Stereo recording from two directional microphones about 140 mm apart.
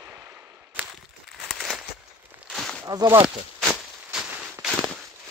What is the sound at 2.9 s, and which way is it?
Speech, 25° right (ahead or behind).